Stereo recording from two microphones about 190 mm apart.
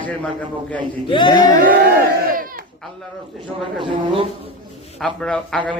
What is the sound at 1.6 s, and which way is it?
Speech, 45° right (ahead or behind).